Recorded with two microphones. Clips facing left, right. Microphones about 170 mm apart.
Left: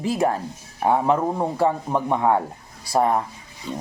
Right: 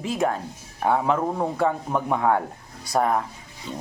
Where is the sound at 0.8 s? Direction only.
20° left (ahead or behind).